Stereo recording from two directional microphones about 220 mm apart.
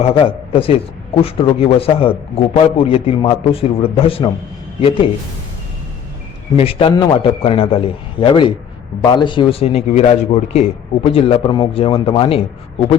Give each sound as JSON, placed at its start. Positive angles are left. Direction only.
{"t": 0.0, "sound": "a man's voice", "side_deg": 25}
{"t": 6.6, "sound": "a man's voice", "side_deg": 25}